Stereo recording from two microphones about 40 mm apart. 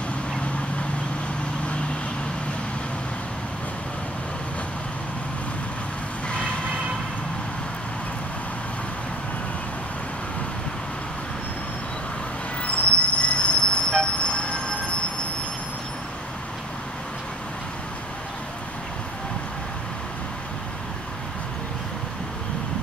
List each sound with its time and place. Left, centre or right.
6.2 s vehicle: left
12.6 s train: left